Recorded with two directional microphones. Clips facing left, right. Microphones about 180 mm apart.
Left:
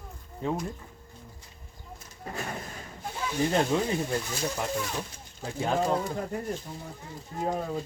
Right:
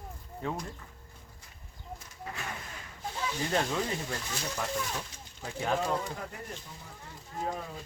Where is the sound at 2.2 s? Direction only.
40° left (ahead or behind).